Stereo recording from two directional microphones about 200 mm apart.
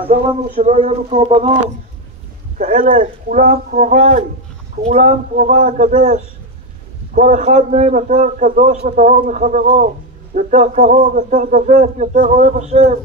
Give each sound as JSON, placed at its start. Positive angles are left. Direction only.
{"t": 0.6, "sound": "a man's voice", "side_deg": -35}
{"t": 2.6, "sound": "a man's voice", "side_deg": -40}